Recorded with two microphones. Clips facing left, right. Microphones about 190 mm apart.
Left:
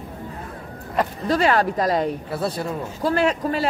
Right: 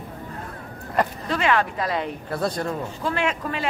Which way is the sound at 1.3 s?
40° left (ahead or behind).